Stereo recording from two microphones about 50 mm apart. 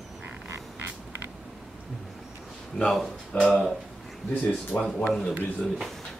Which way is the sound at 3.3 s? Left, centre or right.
Left.